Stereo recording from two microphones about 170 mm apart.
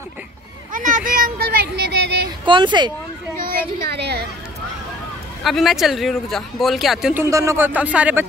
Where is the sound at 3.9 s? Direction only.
75° right (ahead or behind).